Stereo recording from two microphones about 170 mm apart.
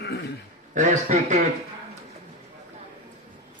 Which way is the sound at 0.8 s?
45° right (ahead or behind).